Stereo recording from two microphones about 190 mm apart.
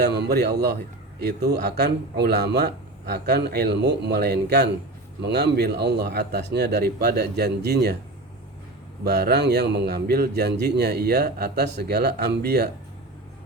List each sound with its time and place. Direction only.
0.0 s speech: 60° right (ahead or behind)
9.0 s speech: 60° right (ahead or behind)